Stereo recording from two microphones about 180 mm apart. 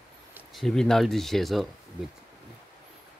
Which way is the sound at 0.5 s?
5° left (ahead or behind).